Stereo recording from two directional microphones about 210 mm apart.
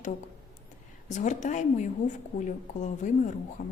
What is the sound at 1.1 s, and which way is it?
A woman's voice, 35° left (ahead or behind).